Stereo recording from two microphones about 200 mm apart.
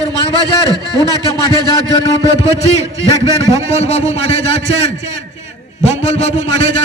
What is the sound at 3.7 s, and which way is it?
Speech, 35° left (ahead or behind).